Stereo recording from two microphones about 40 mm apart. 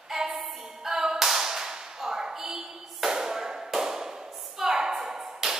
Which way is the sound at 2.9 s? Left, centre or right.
Centre.